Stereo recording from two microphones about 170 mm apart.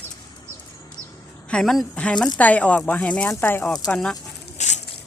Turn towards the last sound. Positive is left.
turn(degrees=40)  # may be behind; listen again after turning